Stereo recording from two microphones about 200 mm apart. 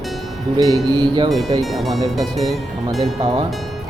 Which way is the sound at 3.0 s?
25° right (ahead or behind).